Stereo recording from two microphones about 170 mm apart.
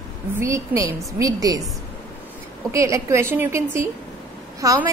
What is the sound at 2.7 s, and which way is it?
A woman's voice, 20° right (ahead or behind).